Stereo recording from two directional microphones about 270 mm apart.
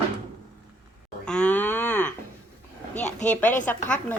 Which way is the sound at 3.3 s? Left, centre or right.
Centre.